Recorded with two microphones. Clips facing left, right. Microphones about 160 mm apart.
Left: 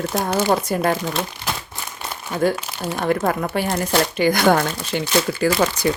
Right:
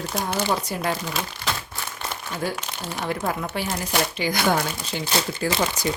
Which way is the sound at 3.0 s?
60° left (ahead or behind).